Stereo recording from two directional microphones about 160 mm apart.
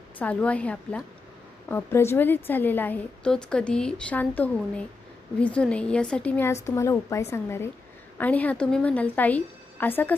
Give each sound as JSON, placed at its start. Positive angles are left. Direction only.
{"t": 0.2, "sound": "a woman's voice", "side_deg": 10}